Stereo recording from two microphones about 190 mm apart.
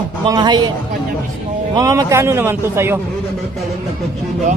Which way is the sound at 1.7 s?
20° right (ahead or behind).